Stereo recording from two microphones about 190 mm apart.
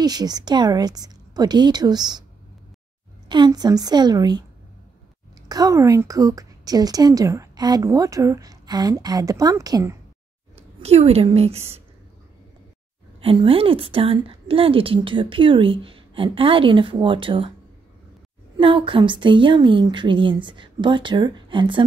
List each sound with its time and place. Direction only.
0.0 s a woman's voice: 20° right (ahead or behind)
3.3 s a woman's voice: 20° right (ahead or behind)
5.5 s a woman's voice: 20° right (ahead or behind)
10.8 s a woman's voice: 35° right (ahead or behind)
13.2 s a woman's voice: 30° right (ahead or behind)
18.6 s a woman's voice: 25° right (ahead or behind)